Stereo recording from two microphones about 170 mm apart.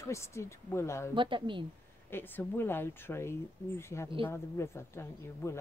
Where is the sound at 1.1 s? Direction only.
30° right (ahead or behind).